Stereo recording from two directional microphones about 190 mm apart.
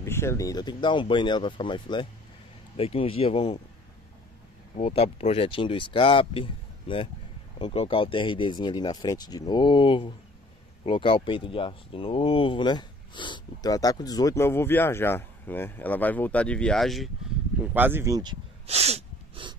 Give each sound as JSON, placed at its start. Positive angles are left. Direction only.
{"t": 0.0, "sound": "speech", "side_deg": 15}
{"t": 4.7, "sound": "speech", "side_deg": 30}
{"t": 17.7, "sound": "a sound", "side_deg": -10}